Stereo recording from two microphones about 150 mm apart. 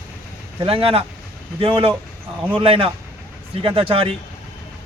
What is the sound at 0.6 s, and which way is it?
Speech, 40° right (ahead or behind).